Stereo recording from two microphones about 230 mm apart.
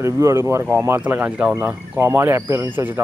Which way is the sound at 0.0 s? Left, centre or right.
Centre.